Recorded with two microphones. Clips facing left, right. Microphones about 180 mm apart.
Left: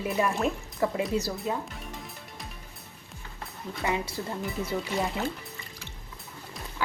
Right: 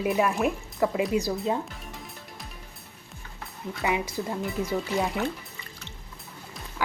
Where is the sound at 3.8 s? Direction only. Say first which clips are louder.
Right 2 dB; 15° right (ahead or behind).